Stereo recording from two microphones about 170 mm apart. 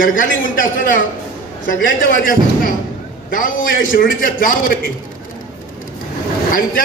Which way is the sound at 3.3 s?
55° left (ahead or behind).